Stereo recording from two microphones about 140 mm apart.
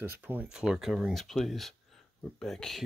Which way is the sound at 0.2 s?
10° right (ahead or behind).